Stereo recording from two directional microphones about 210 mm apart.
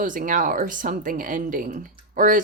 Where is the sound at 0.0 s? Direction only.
40° right (ahead or behind).